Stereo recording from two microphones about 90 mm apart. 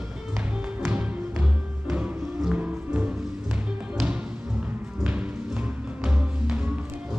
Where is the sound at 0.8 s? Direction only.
15° right (ahead or behind).